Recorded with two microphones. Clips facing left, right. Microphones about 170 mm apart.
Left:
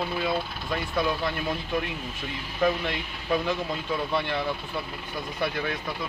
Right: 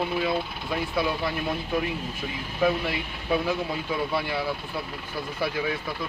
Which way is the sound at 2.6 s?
5° right (ahead or behind).